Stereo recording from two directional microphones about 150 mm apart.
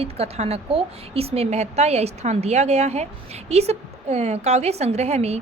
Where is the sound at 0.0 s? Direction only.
45° right (ahead or behind).